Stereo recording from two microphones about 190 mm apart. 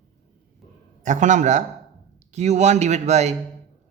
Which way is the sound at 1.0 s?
40° right (ahead or behind).